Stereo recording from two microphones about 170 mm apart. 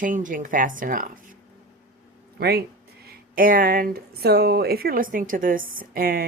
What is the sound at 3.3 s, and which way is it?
Speech, 55° right (ahead or behind).